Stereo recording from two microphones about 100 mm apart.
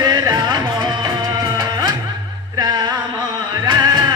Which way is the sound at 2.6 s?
45° right (ahead or behind).